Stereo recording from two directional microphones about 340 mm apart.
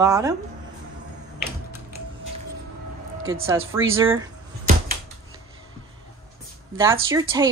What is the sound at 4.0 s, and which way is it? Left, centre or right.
Speech, centre.